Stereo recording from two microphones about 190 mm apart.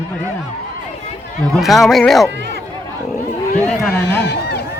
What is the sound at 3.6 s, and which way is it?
Speech, 10° left (ahead or behind).